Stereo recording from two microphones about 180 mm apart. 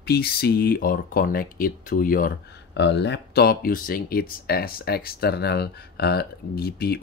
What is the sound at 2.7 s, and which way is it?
Speech, 75° left (ahead or behind).